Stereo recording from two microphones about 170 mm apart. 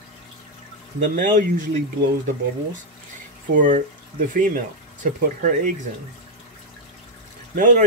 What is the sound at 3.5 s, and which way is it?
Speech, 50° right (ahead or behind).